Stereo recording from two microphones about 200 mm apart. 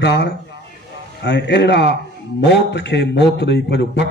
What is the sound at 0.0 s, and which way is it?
A man's voice, 60° left (ahead or behind).